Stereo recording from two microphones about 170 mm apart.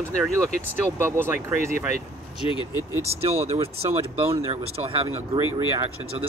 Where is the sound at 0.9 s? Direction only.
15° right (ahead or behind).